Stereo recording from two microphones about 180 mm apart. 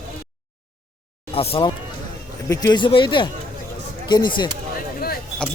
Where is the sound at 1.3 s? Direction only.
30° left (ahead or behind).